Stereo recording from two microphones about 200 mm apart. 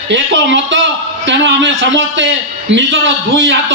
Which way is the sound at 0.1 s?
65° right (ahead or behind).